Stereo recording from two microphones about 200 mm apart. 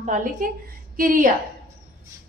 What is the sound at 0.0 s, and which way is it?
A woman's voice, 40° right (ahead or behind).